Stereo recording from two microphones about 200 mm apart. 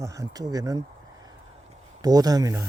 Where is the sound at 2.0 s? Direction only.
20° right (ahead or behind).